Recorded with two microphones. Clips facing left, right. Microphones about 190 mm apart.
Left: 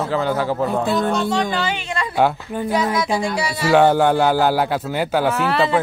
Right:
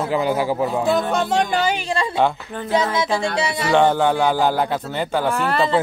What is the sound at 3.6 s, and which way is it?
Speech, 10° left (ahead or behind).